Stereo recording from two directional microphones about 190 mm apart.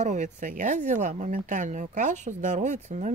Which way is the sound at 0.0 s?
40° right (ahead or behind).